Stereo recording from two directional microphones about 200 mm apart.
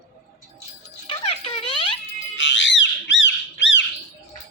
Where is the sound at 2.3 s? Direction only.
65° left (ahead or behind).